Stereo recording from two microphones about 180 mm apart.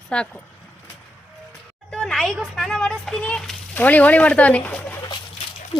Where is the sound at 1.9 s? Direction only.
5° left (ahead or behind).